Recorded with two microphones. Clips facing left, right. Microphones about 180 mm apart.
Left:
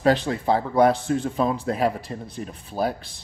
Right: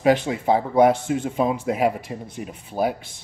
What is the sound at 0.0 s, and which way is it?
Speech, 15° right (ahead or behind).